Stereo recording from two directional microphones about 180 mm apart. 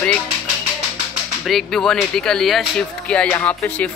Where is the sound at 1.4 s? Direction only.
Centre (ahead or behind).